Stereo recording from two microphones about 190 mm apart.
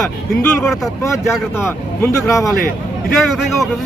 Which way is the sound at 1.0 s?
15° left (ahead or behind).